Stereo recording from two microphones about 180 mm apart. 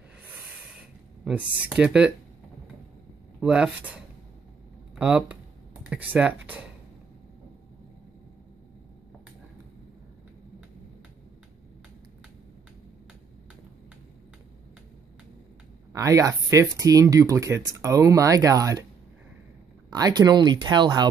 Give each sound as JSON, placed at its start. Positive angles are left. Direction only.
{"t": 1.2, "sound": "speech", "side_deg": -5}
{"t": 3.3, "sound": "speech", "side_deg": -5}
{"t": 15.9, "sound": "speech", "side_deg": -20}
{"t": 19.9, "sound": "speech", "side_deg": -20}